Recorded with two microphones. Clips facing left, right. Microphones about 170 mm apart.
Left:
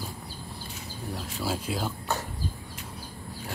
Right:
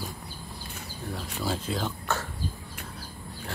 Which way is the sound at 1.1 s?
5° left (ahead or behind).